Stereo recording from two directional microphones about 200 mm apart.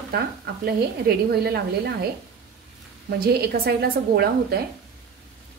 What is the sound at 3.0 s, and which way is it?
A woman's voice, 50° right (ahead or behind).